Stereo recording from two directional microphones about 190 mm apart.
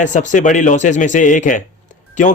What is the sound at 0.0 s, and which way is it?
A man's voice, 40° left (ahead or behind).